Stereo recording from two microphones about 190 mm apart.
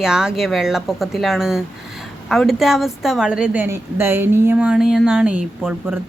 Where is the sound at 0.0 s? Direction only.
5° right (ahead or behind).